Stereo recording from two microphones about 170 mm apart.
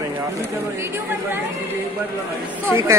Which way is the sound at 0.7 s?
15° right (ahead or behind).